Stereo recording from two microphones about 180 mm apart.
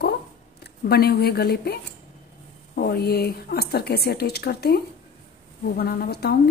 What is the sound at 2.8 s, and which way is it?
A woman's voice, 60° left (ahead or behind).